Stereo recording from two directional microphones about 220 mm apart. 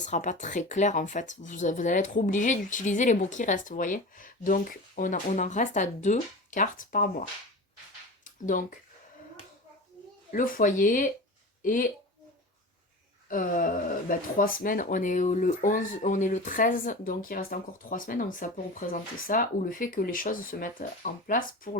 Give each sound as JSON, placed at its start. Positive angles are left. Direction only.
{"t": 0.0, "sound": "speech", "side_deg": 35}
{"t": 8.2, "sound": "a sound", "side_deg": 35}
{"t": 10.3, "sound": "speech", "side_deg": 40}
{"t": 13.2, "sound": "speech", "side_deg": 40}